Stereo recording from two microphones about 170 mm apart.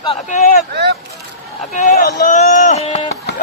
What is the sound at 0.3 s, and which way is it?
Speech, 50° left (ahead or behind).